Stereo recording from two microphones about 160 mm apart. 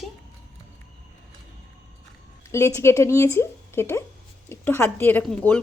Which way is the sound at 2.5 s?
15° left (ahead or behind).